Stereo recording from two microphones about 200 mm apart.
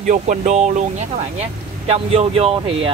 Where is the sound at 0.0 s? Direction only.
40° right (ahead or behind).